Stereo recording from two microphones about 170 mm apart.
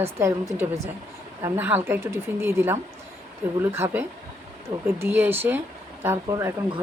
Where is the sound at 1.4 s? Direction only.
10° right (ahead or behind).